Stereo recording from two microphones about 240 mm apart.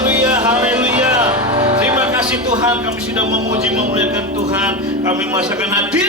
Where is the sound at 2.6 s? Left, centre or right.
Centre.